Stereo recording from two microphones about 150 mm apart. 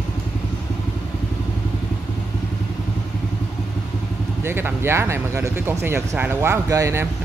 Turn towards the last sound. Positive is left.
turn(degrees=-20)  # may be behind; listen again after turning